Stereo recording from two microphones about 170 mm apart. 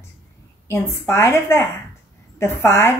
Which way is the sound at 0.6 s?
15° left (ahead or behind).